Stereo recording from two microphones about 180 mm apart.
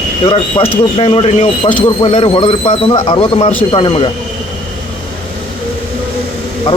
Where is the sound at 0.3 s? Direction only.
30° left (ahead or behind).